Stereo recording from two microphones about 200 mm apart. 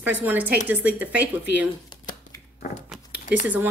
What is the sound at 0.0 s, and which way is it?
Speech, 10° right (ahead or behind).